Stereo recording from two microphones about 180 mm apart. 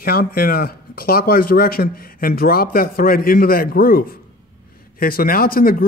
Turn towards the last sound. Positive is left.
turn(degrees=55)  # may be behind; listen again after turning